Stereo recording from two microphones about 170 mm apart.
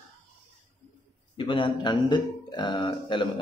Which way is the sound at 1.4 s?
30° left (ahead or behind).